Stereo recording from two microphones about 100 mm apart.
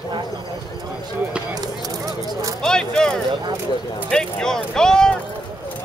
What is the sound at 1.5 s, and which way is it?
Speech, 35° right (ahead or behind).